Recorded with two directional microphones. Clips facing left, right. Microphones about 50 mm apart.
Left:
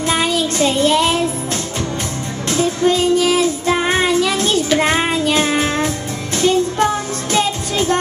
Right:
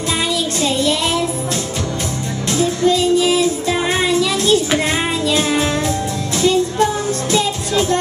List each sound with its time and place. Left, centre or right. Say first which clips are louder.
0.1 s child singing: left 2 dB; left
2.5 s child singing: even; left
5.1 s music: left 1 dB; left